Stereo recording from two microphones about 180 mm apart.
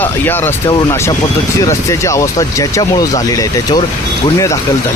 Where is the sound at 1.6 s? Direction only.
15° left (ahead or behind).